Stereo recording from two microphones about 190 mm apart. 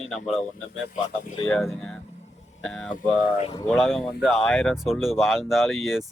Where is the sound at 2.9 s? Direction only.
45° left (ahead or behind).